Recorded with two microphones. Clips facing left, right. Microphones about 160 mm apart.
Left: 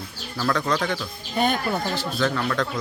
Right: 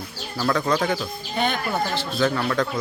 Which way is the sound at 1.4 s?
40° left (ahead or behind).